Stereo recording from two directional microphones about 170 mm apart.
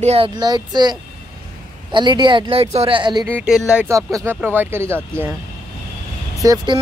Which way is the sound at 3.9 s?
20° right (ahead or behind).